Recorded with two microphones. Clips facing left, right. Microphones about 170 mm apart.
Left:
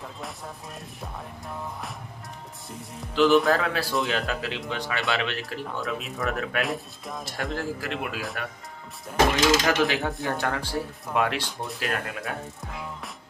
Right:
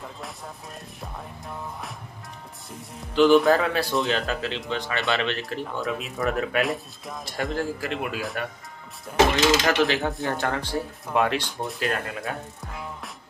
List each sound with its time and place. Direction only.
3.2 s speech: centre (ahead or behind)
9.6 s speech: 10° left (ahead or behind)